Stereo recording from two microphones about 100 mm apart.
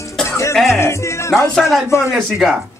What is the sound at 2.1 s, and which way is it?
Speech, centre (ahead or behind).